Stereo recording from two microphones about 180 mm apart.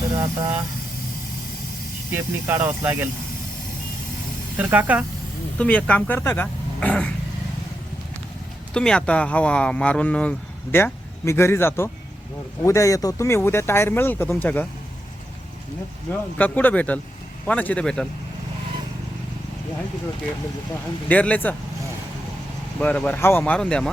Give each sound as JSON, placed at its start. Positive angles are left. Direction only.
{"t": 0.2, "sound": "speech", "side_deg": -20}
{"t": 2.1, "sound": "speech", "side_deg": -15}
{"t": 4.5, "sound": "speech", "side_deg": -10}
{"t": 5.5, "sound": "speech", "side_deg": 5}
{"t": 8.7, "sound": "speech", "side_deg": 5}
{"t": 16.4, "sound": "speech", "side_deg": 10}
{"t": 21.1, "sound": "speech", "side_deg": 10}
{"t": 22.8, "sound": "speech", "side_deg": 10}